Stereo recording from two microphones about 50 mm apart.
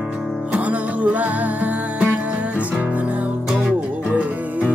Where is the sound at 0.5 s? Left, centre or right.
Right.